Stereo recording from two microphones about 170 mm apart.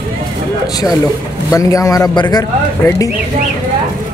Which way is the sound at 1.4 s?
20° left (ahead or behind).